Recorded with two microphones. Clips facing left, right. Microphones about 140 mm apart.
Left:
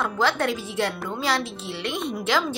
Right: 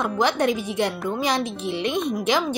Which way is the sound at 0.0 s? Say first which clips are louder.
Right 2 dB; 20° right (ahead or behind).